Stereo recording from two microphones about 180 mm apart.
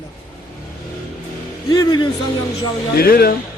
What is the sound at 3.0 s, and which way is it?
Speech, 55° left (ahead or behind).